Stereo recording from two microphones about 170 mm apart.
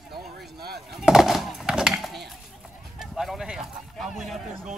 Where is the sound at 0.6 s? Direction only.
70° right (ahead or behind).